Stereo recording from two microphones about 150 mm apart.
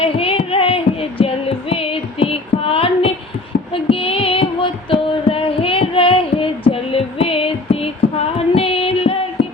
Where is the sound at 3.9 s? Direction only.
40° left (ahead or behind).